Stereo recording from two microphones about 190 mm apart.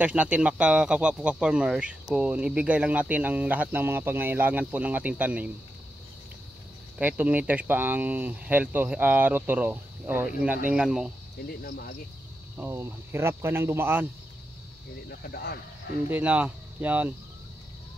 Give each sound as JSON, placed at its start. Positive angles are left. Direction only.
{"t": 0.0, "sound": "speech", "side_deg": -10}
{"t": 7.0, "sound": "speech", "side_deg": -5}
{"t": 11.4, "sound": "cricket", "side_deg": 55}
{"t": 12.5, "sound": "speech", "side_deg": -10}
{"t": 15.0, "sound": "cricket", "side_deg": 55}
{"t": 16.1, "sound": "speech", "side_deg": -10}